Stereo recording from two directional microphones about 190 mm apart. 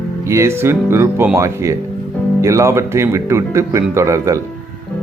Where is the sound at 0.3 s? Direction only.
15° right (ahead or behind).